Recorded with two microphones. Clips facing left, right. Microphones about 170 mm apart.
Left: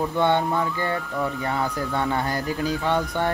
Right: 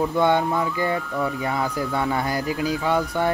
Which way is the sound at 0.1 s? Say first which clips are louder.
Right 1 dB; 10° right (ahead or behind).